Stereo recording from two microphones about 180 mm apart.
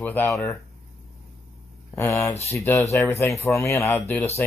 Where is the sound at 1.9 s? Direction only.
15° left (ahead or behind).